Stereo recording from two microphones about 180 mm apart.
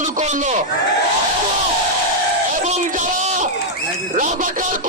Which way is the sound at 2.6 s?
40° right (ahead or behind).